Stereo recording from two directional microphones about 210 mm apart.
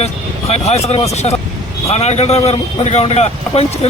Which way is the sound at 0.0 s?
30° left (ahead or behind).